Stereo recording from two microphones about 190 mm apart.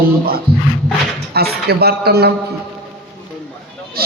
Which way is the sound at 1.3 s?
55° right (ahead or behind).